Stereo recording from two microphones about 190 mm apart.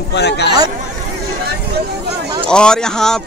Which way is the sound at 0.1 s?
65° left (ahead or behind).